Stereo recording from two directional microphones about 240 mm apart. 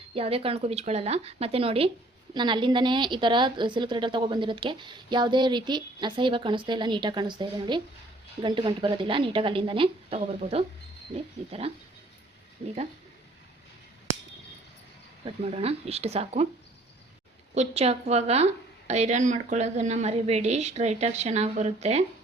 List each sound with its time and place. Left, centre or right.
0.1 s a woman's voice: right
15.2 s a woman's voice: right
17.5 s a woman's voice: right